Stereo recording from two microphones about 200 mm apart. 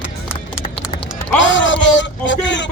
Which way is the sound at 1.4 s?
70° left (ahead or behind).